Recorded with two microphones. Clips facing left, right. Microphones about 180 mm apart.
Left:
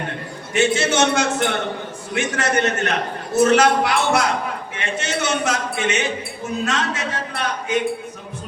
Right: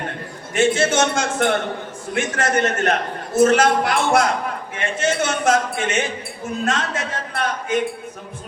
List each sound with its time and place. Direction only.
0.5 s speech: 50° right (ahead or behind)